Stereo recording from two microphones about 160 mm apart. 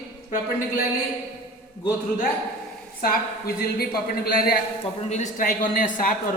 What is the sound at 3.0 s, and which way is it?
A woman's voice, 70° left (ahead or behind).